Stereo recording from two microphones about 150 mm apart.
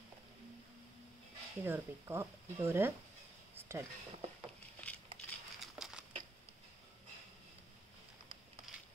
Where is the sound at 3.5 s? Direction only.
15° right (ahead or behind).